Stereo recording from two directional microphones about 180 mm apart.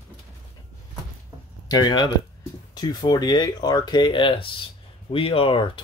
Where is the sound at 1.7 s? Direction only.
25° left (ahead or behind).